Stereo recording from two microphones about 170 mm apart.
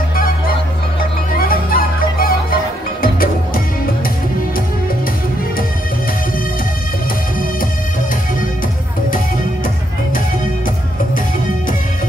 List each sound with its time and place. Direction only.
1.3 s music: 60° left (ahead or behind)